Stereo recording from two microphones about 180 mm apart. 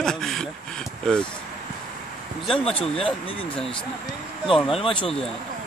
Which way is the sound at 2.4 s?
30° left (ahead or behind).